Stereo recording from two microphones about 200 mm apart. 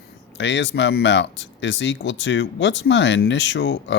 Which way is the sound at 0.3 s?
65° left (ahead or behind).